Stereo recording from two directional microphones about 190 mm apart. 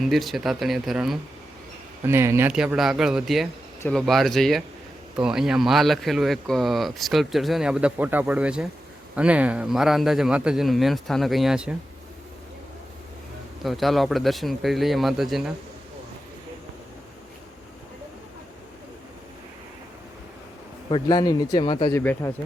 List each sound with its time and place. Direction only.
0.0 s speech: centre (ahead or behind)
2.0 s speech: 15° right (ahead or behind)
13.7 s speech: centre (ahead or behind)
20.9 s speech: 20° left (ahead or behind)
21.9 s speech: 10° left (ahead or behind)